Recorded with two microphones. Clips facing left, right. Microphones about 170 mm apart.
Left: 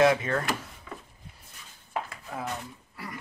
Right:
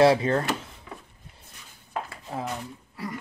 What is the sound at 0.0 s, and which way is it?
Speech, 35° right (ahead or behind).